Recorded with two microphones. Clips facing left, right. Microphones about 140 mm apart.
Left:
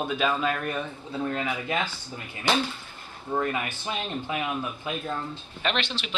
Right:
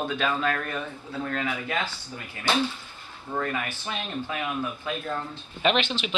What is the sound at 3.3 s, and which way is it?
Speech, 20° left (ahead or behind).